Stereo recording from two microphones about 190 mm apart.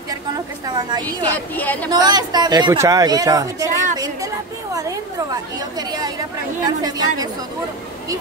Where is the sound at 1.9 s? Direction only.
20° right (ahead or behind).